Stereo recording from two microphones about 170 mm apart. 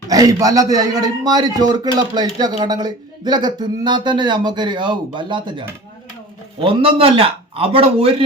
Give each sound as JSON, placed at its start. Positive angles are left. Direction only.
{"t": 0.1, "sound": "a man's voice", "side_deg": -20}